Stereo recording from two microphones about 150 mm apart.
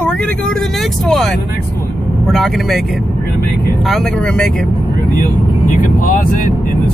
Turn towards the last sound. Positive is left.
turn(degrees=60)  # may be behind; listen again after turning